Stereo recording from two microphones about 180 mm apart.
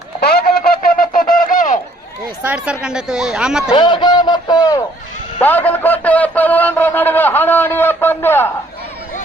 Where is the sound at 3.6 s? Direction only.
25° left (ahead or behind).